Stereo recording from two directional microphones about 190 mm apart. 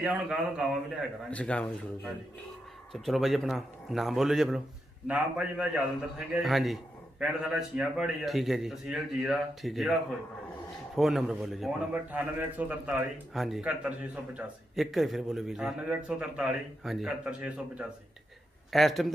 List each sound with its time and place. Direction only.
0.0 s a man's voice: 5° right (ahead or behind)
11.0 s a man's voice: centre (ahead or behind)